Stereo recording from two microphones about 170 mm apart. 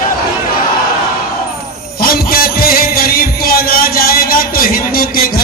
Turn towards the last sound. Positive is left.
turn(degrees=60)  # may be behind; listen again after turning